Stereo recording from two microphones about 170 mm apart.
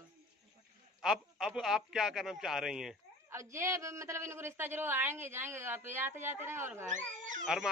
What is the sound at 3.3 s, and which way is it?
A woman's voice, 15° right (ahead or behind).